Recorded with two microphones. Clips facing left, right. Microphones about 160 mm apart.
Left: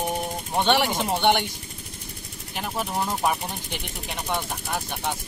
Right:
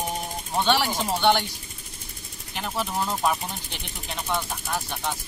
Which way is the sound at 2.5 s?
10° left (ahead or behind).